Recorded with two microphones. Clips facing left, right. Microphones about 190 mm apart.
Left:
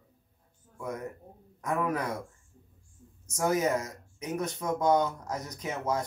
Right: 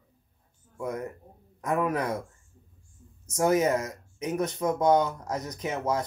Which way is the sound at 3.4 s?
20° right (ahead or behind).